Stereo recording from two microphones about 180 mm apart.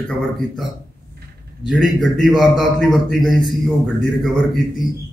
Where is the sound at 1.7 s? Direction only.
Centre (ahead or behind).